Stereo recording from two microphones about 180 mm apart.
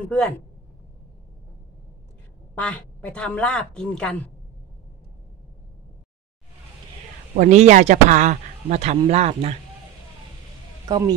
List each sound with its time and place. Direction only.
2.5 s speech: 5° left (ahead or behind)
7.3 s speech: 40° right (ahead or behind)
10.9 s speech: 20° right (ahead or behind)